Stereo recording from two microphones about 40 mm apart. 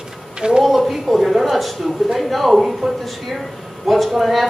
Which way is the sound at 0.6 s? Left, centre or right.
Centre.